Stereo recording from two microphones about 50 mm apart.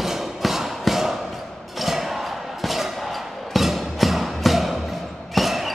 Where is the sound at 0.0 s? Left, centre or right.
Centre.